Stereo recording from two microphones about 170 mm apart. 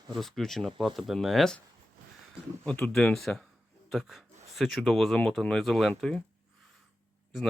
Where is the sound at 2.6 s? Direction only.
5° left (ahead or behind).